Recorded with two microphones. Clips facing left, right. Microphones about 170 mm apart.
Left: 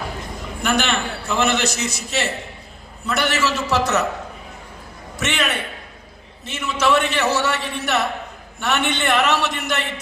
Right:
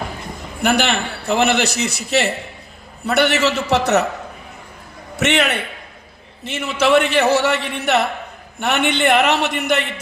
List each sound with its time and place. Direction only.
0.6 s a man's voice: 60° right (ahead or behind)
5.1 s a man's voice: 60° right (ahead or behind)